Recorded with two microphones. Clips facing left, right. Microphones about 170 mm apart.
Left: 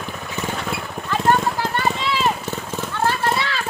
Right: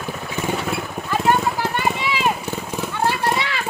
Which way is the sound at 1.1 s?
10° right (ahead or behind).